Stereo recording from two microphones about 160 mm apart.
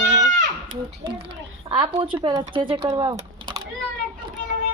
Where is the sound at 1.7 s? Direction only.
30° right (ahead or behind).